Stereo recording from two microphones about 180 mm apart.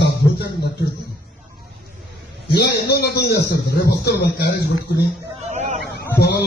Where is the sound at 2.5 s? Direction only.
60° left (ahead or behind).